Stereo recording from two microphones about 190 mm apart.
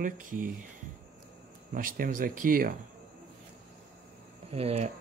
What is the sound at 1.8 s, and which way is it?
Speech, 45° right (ahead or behind).